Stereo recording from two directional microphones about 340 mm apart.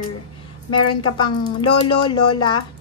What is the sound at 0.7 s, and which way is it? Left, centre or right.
A woman's voice, centre.